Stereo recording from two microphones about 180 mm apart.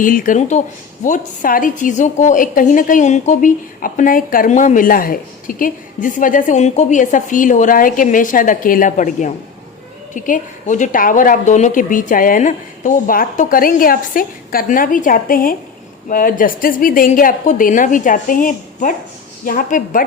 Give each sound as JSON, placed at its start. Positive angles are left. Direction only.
{"t": 0.0, "sound": "a woman's voice", "side_deg": 50}